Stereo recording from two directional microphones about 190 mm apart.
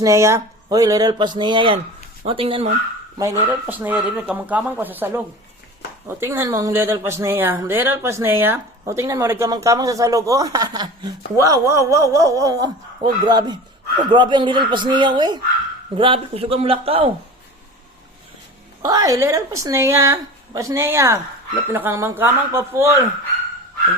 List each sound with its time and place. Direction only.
0.0 s speech: 15° right (ahead or behind)
3.2 s speech: 15° right (ahead or behind); by 17.1 s 30° right (ahead or behind)
18.8 s speech: 20° right (ahead or behind)